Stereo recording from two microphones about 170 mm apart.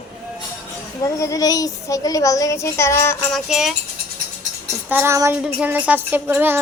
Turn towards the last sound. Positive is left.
turn(degrees=-10)  # may be behind; listen again after turning